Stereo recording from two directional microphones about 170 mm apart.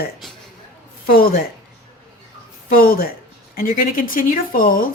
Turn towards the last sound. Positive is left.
turn(degrees=55)  # may be behind; listen again after turning